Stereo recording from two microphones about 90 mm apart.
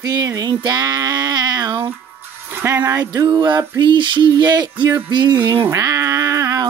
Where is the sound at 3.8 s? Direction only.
60° right (ahead or behind).